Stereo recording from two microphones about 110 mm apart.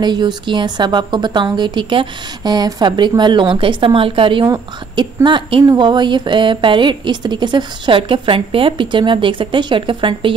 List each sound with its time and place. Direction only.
0.0 s a woman's voice: 40° right (ahead or behind)